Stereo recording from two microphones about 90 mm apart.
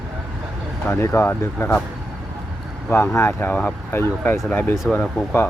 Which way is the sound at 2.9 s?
25° left (ahead or behind).